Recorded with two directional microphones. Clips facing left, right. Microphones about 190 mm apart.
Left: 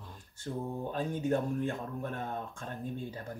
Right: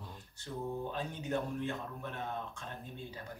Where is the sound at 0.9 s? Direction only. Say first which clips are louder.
Left 6 dB; 50° left (ahead or behind).